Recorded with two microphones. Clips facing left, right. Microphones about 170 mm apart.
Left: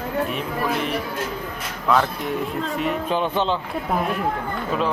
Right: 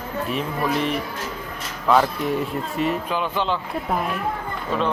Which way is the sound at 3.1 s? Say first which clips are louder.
Left 2 dB; 25° left (ahead or behind).